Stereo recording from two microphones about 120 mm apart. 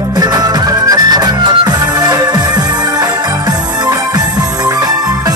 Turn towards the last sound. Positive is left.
turn(degrees=-35)  # may be behind; listen again after turning